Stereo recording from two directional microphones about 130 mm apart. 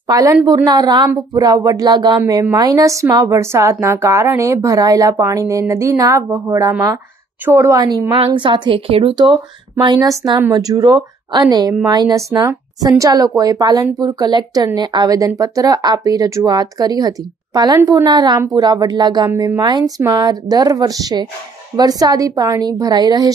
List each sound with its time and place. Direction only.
0.0 s speech: 30° right (ahead or behind)
8.2 s speech: 40° right (ahead or behind)